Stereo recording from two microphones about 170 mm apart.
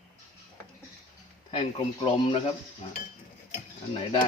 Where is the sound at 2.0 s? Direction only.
30° left (ahead or behind).